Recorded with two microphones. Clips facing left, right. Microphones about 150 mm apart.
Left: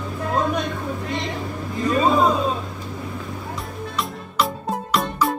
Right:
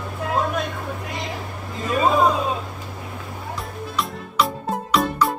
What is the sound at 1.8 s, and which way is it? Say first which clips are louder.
Vehicle: even; centre (ahead or behind).